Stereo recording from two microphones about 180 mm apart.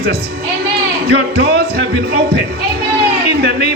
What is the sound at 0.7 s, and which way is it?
Speech, 65° right (ahead or behind).